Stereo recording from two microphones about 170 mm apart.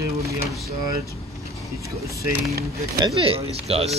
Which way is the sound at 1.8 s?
20° right (ahead or behind).